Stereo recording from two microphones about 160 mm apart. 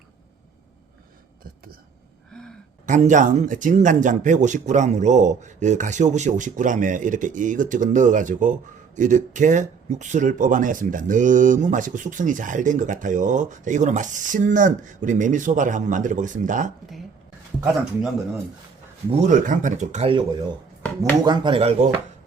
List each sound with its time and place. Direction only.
2.8 s speech: 50° right (ahead or behind)
19.1 s speech: 50° right (ahead or behind)